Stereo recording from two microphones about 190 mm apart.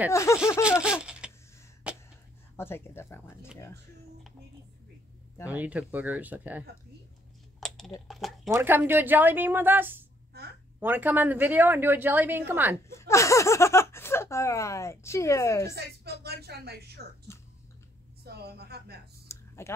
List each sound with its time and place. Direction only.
0.1 s speech: 15° left (ahead or behind)
0.8 s a sound: 5° right (ahead or behind)
2.5 s speech: 10° left (ahead or behind)
5.4 s speech: 10° right (ahead or behind)
7.6 s a sound: centre (ahead or behind)
8.1 s speech: centre (ahead or behind)
8.5 s speech: 15° right (ahead or behind)
12.9 s speech: 15° left (ahead or behind)
15.7 s a woman's voice: 60° right (ahead or behind)
18.2 s a woman's voice: 55° right (ahead or behind)
19.2 s computer keyboard: 15° left (ahead or behind)